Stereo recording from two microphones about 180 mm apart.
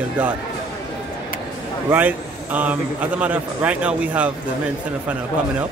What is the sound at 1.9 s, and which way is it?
A man's voice, 10° right (ahead or behind).